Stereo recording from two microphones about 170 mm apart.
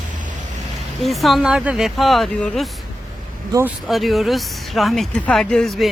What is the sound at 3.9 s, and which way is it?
Speech, centre (ahead or behind).